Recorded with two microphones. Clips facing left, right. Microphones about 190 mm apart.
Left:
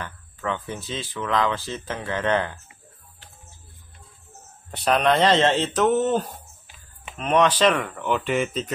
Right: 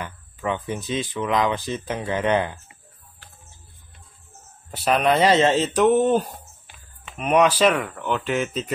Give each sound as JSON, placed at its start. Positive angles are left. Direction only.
{"t": 0.0, "sound": "speech", "side_deg": -15}
{"t": 4.6, "sound": "speech", "side_deg": -5}